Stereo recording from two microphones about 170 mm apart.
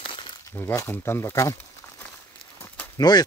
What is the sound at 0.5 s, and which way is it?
Speech, 15° left (ahead or behind).